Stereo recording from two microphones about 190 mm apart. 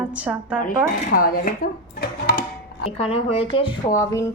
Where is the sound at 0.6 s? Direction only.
45° left (ahead or behind).